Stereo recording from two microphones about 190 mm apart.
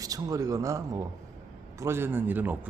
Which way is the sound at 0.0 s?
20° right (ahead or behind).